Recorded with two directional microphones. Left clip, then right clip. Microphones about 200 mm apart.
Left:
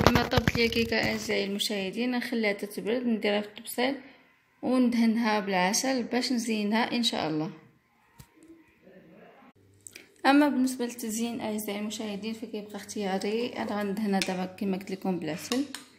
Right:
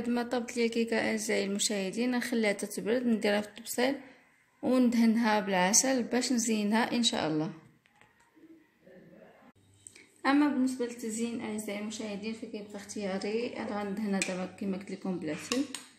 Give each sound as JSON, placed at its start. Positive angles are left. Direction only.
{"t": 0.1, "sound": "a woman's voice", "side_deg": -5}
{"t": 9.9, "sound": "a woman's voice", "side_deg": 40}